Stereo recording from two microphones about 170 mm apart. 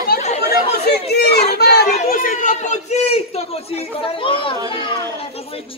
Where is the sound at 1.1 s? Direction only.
70° left (ahead or behind).